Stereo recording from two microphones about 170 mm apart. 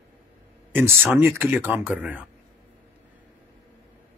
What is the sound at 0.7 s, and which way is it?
Speech, 10° right (ahead or behind).